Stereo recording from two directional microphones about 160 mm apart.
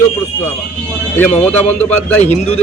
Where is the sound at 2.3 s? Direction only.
40° left (ahead or behind).